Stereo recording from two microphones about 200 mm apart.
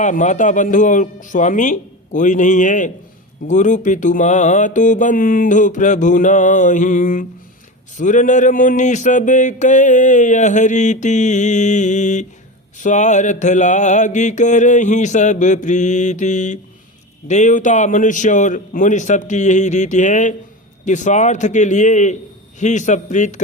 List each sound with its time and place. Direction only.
0.0 s mantra: 40° left (ahead or behind)